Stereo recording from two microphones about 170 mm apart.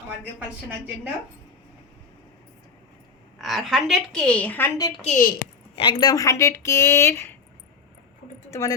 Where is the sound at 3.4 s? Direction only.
Centre (ahead or behind).